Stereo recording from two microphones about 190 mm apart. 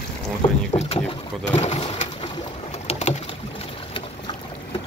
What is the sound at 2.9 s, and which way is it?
Boat, 35° left (ahead or behind).